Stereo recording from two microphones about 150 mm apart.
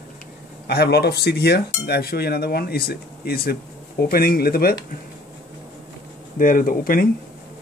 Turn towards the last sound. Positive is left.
turn(degrees=75)  # may be behind; listen again after turning